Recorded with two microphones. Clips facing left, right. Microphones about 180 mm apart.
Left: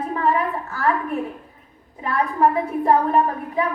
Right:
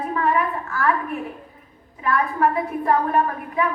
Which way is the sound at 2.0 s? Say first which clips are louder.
Left 1 dB; 35° left (ahead or behind).